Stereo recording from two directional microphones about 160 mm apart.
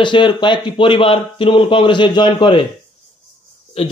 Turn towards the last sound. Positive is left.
turn(degrees=35)  # may be behind; listen again after turning